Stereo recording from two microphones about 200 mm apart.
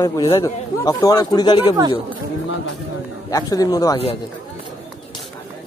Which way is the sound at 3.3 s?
20° left (ahead or behind).